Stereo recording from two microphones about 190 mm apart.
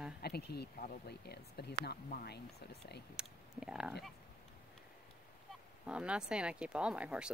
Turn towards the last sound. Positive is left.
turn(degrees=-5)  # may be behind; listen again after turning